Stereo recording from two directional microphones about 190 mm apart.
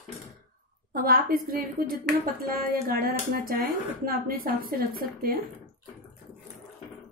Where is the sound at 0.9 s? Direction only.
50° right (ahead or behind).